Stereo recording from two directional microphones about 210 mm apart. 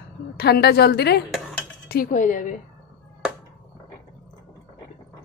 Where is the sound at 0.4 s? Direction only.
50° left (ahead or behind).